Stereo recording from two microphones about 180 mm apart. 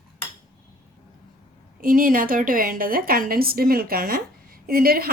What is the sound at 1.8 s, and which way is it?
A woman's voice, 50° right (ahead or behind).